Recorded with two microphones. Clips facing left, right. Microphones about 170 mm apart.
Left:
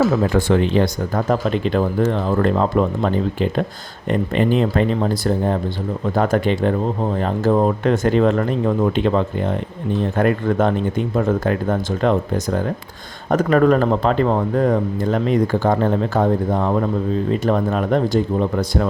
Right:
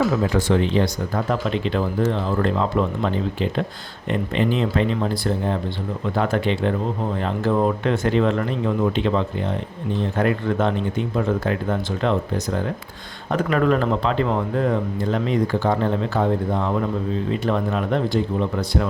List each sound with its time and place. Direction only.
0.3 s a man's voice: 55° left (ahead or behind)
4.1 s a man's voice: 45° left (ahead or behind)
13.3 s a man's voice: 45° left (ahead or behind)